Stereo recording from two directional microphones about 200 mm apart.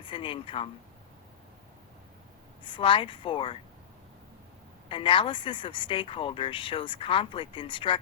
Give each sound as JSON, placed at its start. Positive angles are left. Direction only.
{"t": 0.0, "sound": "a woman's voice", "side_deg": 25}
{"t": 2.6, "sound": "a woman's voice", "side_deg": 25}
{"t": 4.9, "sound": "a woman's voice", "side_deg": 25}